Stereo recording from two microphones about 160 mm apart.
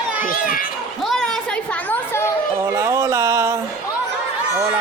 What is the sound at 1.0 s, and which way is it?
Chatter, centre (ahead or behind).